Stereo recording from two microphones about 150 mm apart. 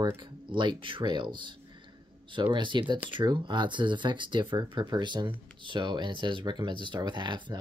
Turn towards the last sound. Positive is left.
turn(degrees=-30)  # may be behind; listen again after turning